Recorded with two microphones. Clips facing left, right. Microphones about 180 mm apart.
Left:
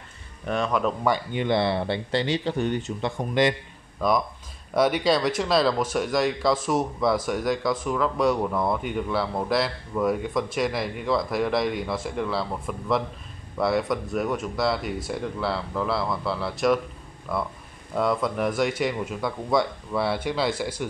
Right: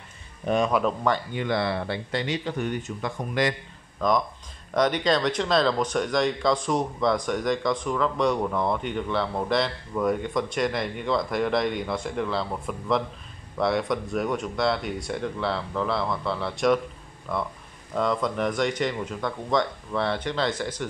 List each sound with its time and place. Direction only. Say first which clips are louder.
0.5 s speech: right 3 dB; 15° right (ahead or behind)
1.0 s speech: left 1 dB; 15° left (ahead or behind)
4.0 s speech: even; 10° left (ahead or behind)